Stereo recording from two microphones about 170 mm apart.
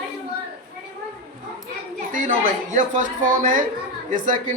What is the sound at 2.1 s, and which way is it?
Speech, 45° right (ahead or behind).